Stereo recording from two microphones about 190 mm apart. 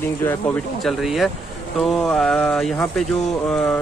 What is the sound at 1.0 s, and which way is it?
Speech, centre (ahead or behind).